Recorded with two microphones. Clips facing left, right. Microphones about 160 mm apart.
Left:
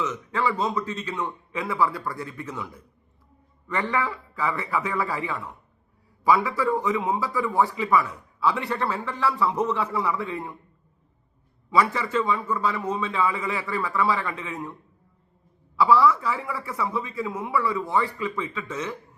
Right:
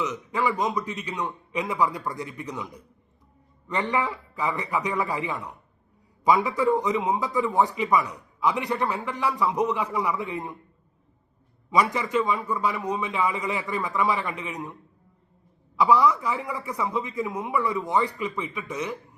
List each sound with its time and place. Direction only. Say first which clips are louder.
0.0 s a man's voice: even; 15° right (ahead or behind)
11.7 s a man's voice: even; 15° right (ahead or behind)